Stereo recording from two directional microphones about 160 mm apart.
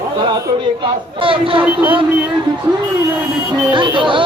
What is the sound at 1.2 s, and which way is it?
Speech, 35° right (ahead or behind).